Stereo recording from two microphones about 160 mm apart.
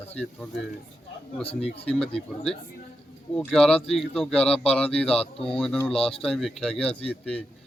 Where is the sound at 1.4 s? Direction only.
40° left (ahead or behind).